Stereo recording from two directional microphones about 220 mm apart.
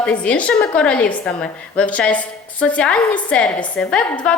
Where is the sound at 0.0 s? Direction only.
5° left (ahead or behind).